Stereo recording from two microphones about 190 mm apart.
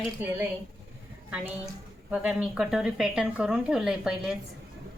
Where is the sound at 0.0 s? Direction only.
10° right (ahead or behind).